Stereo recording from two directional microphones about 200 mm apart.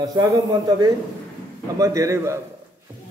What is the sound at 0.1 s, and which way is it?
Speech, 20° right (ahead or behind).